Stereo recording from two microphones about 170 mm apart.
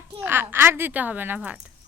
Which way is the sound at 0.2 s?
10° right (ahead or behind).